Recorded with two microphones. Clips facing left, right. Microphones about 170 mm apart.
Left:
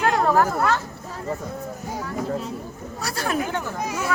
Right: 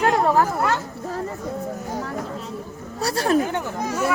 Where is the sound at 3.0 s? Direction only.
30° right (ahead or behind).